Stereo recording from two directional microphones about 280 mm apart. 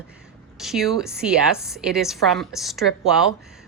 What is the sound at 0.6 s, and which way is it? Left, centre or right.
A woman's voice, centre.